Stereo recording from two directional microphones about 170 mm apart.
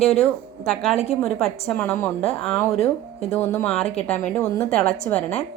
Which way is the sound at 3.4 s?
10° left (ahead or behind).